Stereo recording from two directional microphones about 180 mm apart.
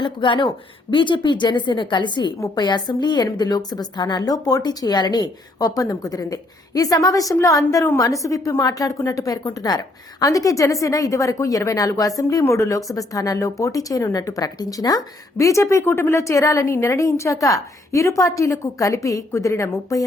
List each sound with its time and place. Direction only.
0.0 s a woman's voice: 25° left (ahead or behind)